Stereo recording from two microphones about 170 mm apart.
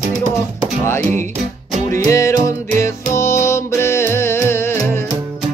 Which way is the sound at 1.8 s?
15° left (ahead or behind).